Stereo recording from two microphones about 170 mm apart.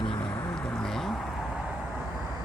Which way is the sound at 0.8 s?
5° left (ahead or behind).